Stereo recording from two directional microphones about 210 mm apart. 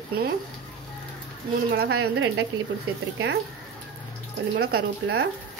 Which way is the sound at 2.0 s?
55° right (ahead or behind).